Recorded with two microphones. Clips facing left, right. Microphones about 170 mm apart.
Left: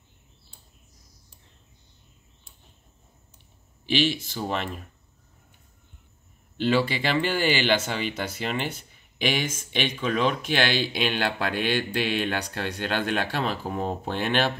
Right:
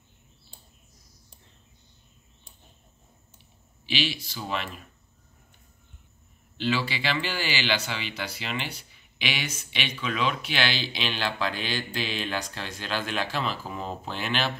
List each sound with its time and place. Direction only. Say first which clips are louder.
3.8 s speech: left 6 dB; 50° left (ahead or behind)
6.6 s speech: left 5 dB; 50° left (ahead or behind)